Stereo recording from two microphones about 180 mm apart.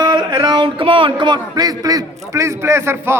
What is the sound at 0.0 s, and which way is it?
A man's voice, 25° right (ahead or behind).